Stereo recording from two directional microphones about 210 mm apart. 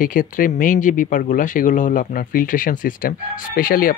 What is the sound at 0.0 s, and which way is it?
Speech, 40° left (ahead or behind).